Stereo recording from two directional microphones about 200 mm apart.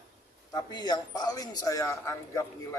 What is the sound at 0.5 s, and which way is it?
A man's voice, 20° left (ahead or behind).